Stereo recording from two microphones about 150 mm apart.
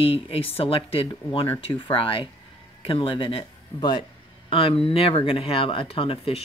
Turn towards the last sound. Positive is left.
turn(degrees=40)  # may be behind; listen again after turning